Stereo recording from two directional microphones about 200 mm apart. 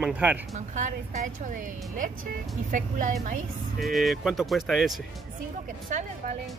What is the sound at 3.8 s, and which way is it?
Speech, centre (ahead or behind).